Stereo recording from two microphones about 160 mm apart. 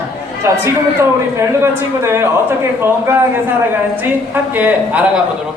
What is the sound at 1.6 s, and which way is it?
Speech, 15° right (ahead or behind).